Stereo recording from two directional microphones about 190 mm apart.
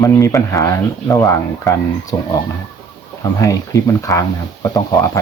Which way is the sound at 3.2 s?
15° left (ahead or behind).